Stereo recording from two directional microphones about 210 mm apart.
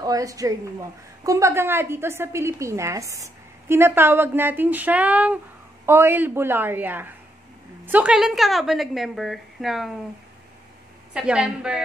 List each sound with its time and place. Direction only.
0.0 s a woman's voice: 15° right (ahead or behind); by 9.9 s centre (ahead or behind)
11.1 s a woman's voice: 5° right (ahead or behind)